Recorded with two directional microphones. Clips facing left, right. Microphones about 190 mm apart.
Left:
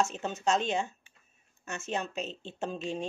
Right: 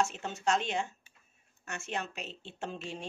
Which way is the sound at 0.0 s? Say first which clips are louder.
Left 2 dB; 20° left (ahead or behind).